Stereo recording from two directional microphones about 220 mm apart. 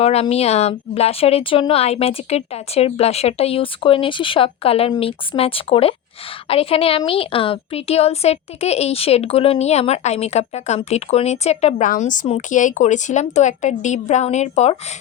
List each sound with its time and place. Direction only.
0.0 s a woman's voice: 30° left (ahead or behind)